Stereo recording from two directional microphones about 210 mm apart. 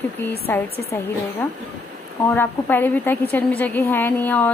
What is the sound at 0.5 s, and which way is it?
Speech, 10° left (ahead or behind).